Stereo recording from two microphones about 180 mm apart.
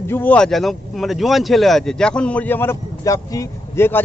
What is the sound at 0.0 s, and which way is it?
Speech, 10° left (ahead or behind).